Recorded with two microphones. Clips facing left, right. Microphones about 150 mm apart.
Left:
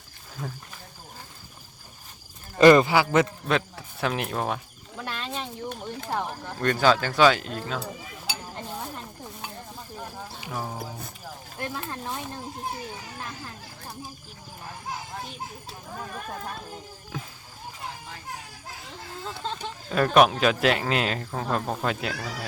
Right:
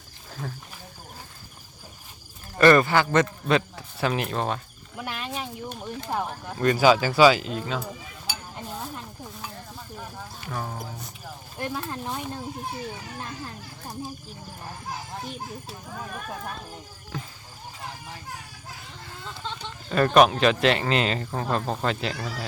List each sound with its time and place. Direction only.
0.4 s speech: centre (ahead or behind)
2.6 s speech: 15° left (ahead or behind)
4.9 s chicken: 15° right (ahead or behind)
6.1 s speech: 5° right (ahead or behind)
10.4 s music: 5° left (ahead or behind)
11.6 s speech: 15° right (ahead or behind)
17.1 s a sound: 5° left (ahead or behind)
19.2 s a sound: 40° left (ahead or behind)
19.9 s speech: centre (ahead or behind)